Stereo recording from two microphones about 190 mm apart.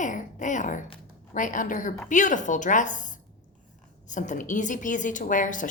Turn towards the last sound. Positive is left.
turn(degrees=45)  # may be behind; listen again after turning